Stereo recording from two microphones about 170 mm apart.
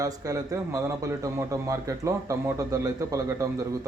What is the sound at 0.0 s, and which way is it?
Speech, 20° right (ahead or behind).